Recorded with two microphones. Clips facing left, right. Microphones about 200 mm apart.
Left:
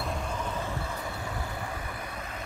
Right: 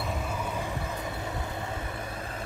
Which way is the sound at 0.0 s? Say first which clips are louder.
Right 1 dB; 5° right (ahead or behind).